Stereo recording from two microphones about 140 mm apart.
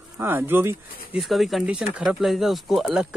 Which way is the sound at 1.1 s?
Centre (ahead or behind).